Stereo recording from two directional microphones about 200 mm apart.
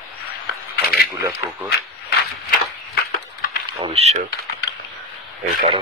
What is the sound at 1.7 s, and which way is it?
Speech, 55° left (ahead or behind).